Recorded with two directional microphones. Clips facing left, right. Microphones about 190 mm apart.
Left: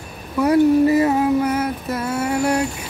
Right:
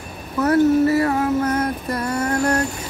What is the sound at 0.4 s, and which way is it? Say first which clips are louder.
Female singing: left 1 dB; 15° left (ahead or behind).